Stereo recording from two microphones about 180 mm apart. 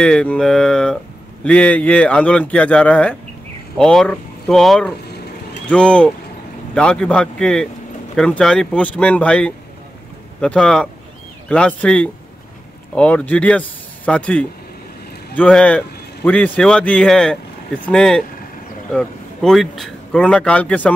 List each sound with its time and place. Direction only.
0.0 s speech: 5° left (ahead or behind)